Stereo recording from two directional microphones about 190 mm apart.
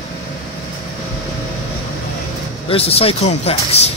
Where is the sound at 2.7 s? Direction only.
30° left (ahead or behind).